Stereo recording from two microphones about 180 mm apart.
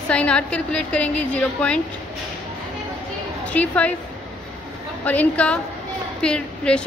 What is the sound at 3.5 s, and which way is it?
Speech, 10° left (ahead or behind).